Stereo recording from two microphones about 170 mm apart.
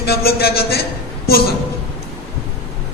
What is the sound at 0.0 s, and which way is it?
Speech, 65° left (ahead or behind).